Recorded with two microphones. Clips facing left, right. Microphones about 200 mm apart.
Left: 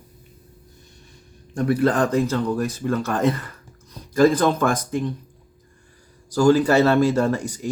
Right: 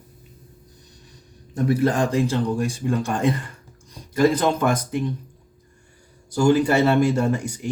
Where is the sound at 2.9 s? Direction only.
15° right (ahead or behind).